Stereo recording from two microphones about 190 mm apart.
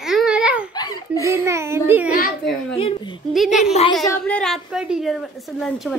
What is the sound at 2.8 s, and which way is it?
Speech, 25° left (ahead or behind).